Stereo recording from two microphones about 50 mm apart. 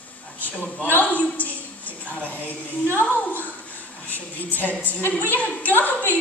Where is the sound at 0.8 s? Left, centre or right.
Left.